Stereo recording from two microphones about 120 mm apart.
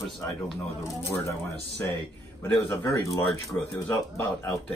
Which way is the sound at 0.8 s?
25° left (ahead or behind).